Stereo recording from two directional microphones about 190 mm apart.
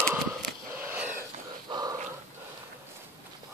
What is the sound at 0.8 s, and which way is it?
Wheeze, 10° right (ahead or behind).